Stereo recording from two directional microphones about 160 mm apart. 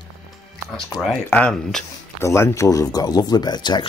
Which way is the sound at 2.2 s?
15° left (ahead or behind).